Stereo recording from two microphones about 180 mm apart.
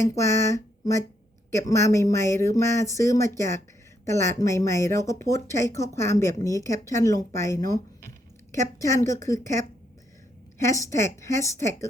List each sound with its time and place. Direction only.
0.1 s speech: 15° left (ahead or behind)
8.8 s speech: 15° left (ahead or behind)